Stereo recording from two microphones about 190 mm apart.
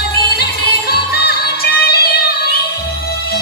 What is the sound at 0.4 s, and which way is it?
Music, 55° left (ahead or behind).